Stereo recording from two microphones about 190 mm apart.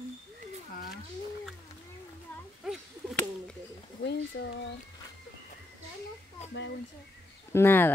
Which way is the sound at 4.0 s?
60° left (ahead or behind).